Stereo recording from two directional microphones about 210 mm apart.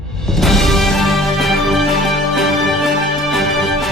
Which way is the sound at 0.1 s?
Centre (ahead or behind).